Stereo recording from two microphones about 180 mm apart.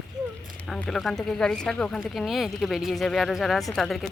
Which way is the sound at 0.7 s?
Centre (ahead or behind).